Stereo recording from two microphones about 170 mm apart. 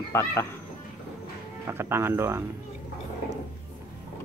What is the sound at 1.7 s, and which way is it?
Speech, 15° right (ahead or behind).